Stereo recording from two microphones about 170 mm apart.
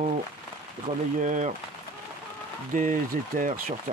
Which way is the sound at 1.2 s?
45° right (ahead or behind).